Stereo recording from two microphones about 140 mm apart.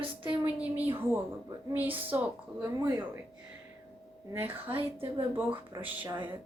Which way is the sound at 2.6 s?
25° right (ahead or behind).